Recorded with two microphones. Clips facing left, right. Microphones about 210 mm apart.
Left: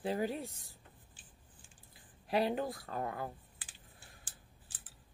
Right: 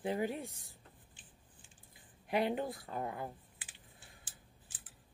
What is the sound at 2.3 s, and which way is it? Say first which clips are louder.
Speech: left 1 dB; 20° right (ahead or behind).